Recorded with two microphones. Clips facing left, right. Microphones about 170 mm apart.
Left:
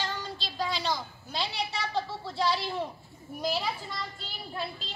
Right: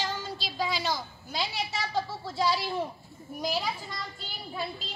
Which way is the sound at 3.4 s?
Centre (ahead or behind).